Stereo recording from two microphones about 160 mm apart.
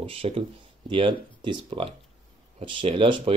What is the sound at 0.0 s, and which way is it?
Speech, 35° right (ahead or behind).